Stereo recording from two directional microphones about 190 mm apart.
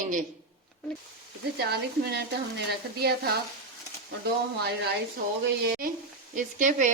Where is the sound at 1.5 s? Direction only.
60° right (ahead or behind).